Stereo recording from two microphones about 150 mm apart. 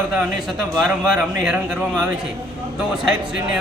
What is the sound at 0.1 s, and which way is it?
A man's voice, centre (ahead or behind).